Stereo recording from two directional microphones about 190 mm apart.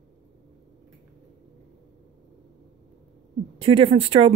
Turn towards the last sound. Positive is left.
turn(degrees=-30)  # may be behind; listen again after turning